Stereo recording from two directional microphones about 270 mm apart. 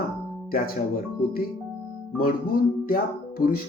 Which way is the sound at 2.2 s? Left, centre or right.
Left.